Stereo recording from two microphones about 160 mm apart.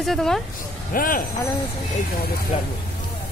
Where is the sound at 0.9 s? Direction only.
60° left (ahead or behind).